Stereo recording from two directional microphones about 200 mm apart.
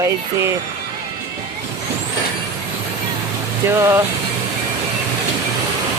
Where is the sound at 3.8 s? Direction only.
15° right (ahead or behind).